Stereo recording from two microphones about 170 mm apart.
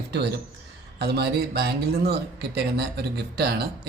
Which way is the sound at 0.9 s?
75° right (ahead or behind).